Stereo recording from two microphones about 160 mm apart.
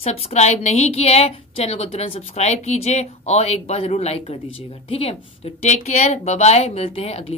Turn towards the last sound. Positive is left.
turn(degrees=35)  # may be behind; listen again after turning